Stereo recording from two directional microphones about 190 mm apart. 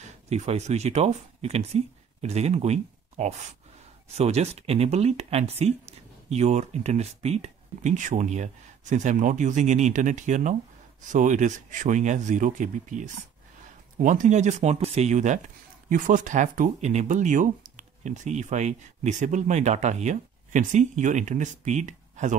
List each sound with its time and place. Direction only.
0.3 s speech: 35° right (ahead or behind)